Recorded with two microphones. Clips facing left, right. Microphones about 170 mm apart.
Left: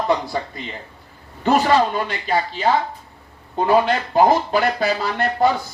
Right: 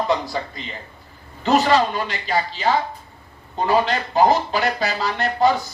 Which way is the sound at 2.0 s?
55° left (ahead or behind).